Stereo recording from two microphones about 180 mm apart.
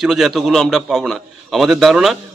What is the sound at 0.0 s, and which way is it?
A man's voice, centre (ahead or behind).